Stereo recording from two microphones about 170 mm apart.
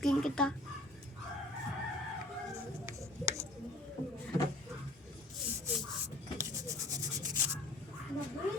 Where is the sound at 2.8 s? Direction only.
15° right (ahead or behind).